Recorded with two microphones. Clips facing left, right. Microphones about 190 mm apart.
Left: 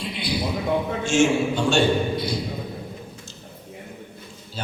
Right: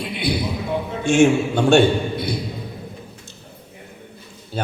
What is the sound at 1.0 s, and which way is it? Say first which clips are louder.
A man's voice: right 5 dB; 60° right (ahead or behind).